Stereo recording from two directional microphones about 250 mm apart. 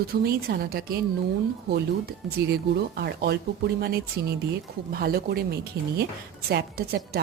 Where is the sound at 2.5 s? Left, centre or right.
Right.